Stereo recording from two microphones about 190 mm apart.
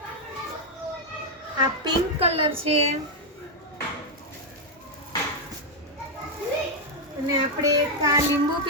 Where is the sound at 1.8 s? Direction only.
30° right (ahead or behind).